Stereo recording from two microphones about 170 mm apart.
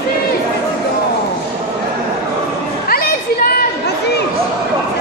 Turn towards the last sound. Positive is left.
turn(degrees=60)  # may be behind; listen again after turning